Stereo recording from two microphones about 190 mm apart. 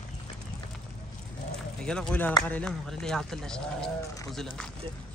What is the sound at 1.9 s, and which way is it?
Speech, 5° left (ahead or behind).